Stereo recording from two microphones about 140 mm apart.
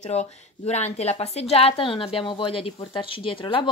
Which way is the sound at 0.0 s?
50° left (ahead or behind).